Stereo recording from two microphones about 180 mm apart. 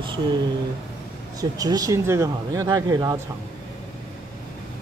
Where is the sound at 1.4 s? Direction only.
20° right (ahead or behind).